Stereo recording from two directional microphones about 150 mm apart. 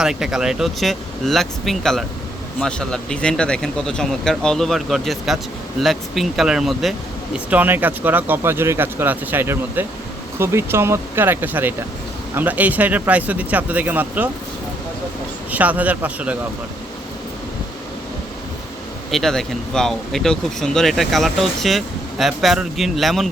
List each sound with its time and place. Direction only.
0.0 s speech: 5° right (ahead or behind)
15.5 s speech: 10° right (ahead or behind)
19.1 s speech: centre (ahead or behind)